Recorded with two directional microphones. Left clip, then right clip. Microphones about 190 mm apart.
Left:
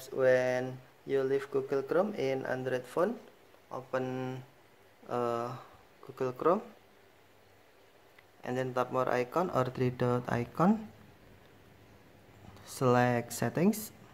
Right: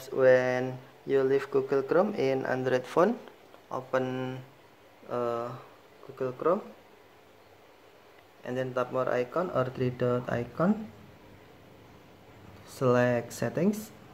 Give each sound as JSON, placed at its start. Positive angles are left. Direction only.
{"t": 0.0, "sound": "speech", "side_deg": -10}
{"t": 4.0, "sound": "speech", "side_deg": 5}
{"t": 8.4, "sound": "speech", "side_deg": 20}
{"t": 12.6, "sound": "speech", "side_deg": 20}